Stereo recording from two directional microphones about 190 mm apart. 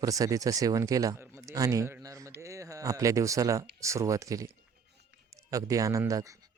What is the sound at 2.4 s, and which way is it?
Speech, 15° right (ahead or behind).